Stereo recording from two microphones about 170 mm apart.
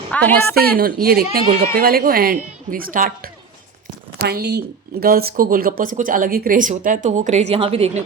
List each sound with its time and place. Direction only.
0.1 s a woman's voice: 10° left (ahead or behind)
0.8 s speech: 60° right (ahead or behind)
4.2 s speech: 70° right (ahead or behind); by 8.0 s 35° right (ahead or behind)